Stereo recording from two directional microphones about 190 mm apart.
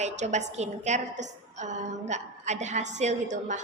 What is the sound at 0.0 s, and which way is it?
A woman's voice, 40° right (ahead or behind).